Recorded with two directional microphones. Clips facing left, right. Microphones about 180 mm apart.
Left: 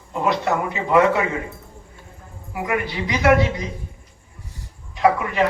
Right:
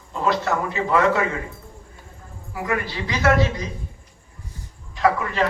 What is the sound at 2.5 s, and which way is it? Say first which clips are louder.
A man's voice: left 2 dB; 20° left (ahead or behind).